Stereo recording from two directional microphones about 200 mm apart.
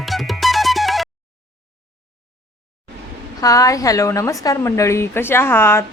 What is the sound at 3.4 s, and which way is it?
Speech, 15° left (ahead or behind).